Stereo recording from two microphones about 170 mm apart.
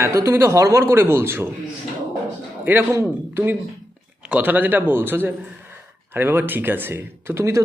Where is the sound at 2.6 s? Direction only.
10° right (ahead or behind).